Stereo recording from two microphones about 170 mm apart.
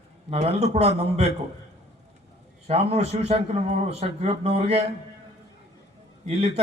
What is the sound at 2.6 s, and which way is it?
A man's voice, 35° right (ahead or behind).